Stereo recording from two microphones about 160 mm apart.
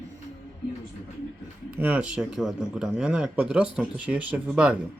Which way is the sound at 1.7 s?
10° right (ahead or behind).